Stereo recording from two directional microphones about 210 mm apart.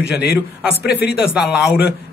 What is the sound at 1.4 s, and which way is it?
Speech, 5° right (ahead or behind).